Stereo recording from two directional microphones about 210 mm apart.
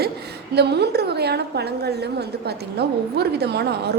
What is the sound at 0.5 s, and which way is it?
A woman's voice, 50° right (ahead or behind).